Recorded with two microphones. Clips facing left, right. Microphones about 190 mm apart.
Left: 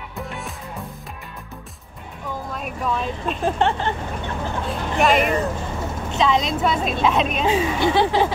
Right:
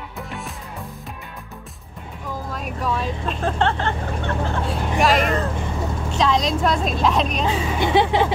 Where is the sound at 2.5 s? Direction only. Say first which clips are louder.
Even; centre (ahead or behind).